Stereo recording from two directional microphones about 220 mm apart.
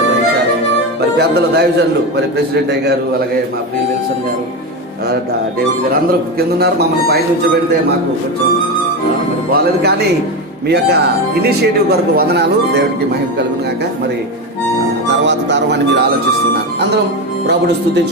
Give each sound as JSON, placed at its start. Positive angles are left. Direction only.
{"t": 1.1, "sound": "a man's voice", "side_deg": -50}
{"t": 6.3, "sound": "a man's voice", "side_deg": -45}
{"t": 9.5, "sound": "a man's voice", "side_deg": -45}
{"t": 15.2, "sound": "a man's voice", "side_deg": -55}